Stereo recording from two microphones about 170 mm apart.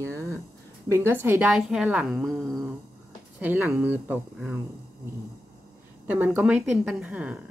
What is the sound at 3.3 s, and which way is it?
Speech, 10° right (ahead or behind).